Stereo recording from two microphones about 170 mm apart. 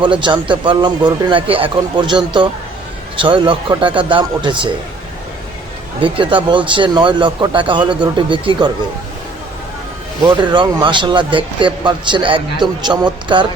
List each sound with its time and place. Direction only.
0.2 s speech: 30° right (ahead or behind)
6.0 s speech: 30° right (ahead or behind)
10.2 s speech: 25° right (ahead or behind)